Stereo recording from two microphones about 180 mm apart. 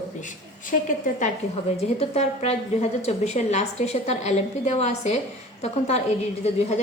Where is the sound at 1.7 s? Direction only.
35° left (ahead or behind).